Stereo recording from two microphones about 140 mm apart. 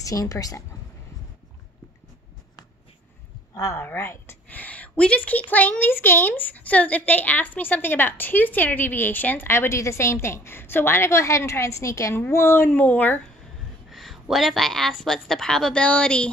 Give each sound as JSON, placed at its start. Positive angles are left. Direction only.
{"t": 0.0, "sound": "a woman's voice", "side_deg": 25}
{"t": 3.5, "sound": "a woman's voice", "side_deg": 20}
{"t": 13.8, "sound": "a woman's voice", "side_deg": 0}